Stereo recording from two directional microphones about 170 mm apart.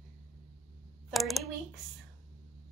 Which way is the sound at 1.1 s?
Centre (ahead or behind).